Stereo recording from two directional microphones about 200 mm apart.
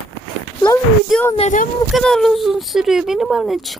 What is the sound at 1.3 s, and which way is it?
Speech, 35° left (ahead or behind).